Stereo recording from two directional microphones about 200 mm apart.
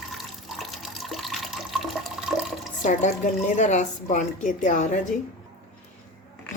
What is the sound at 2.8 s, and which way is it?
A woman's voice, 40° left (ahead or behind).